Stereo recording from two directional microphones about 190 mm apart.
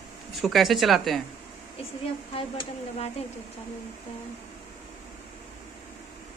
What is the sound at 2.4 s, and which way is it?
Speech, 30° left (ahead or behind).